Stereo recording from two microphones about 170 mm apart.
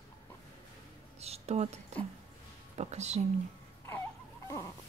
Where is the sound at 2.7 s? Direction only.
40° right (ahead or behind).